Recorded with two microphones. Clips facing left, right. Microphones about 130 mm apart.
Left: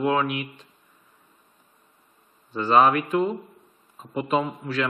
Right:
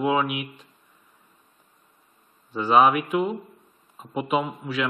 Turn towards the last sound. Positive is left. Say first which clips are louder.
# left 1 dB
turn(degrees=-5)  # may be behind; listen again after turning